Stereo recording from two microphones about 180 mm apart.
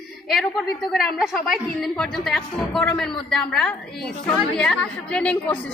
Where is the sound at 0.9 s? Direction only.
Centre (ahead or behind).